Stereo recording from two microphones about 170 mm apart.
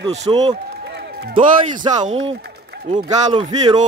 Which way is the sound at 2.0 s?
40° right (ahead or behind).